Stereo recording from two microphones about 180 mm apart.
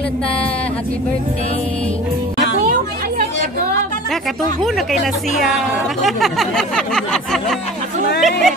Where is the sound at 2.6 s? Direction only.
50° right (ahead or behind).